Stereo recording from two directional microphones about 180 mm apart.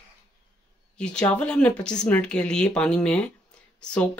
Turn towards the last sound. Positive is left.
turn(degrees=5)  # may be behind; listen again after turning